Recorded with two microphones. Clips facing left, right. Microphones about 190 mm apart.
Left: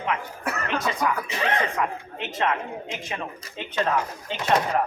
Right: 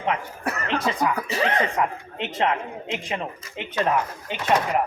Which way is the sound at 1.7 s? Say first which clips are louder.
Right 2 dB; 30° right (ahead or behind).